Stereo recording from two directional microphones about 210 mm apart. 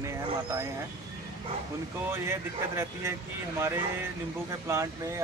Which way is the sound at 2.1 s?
10° right (ahead or behind).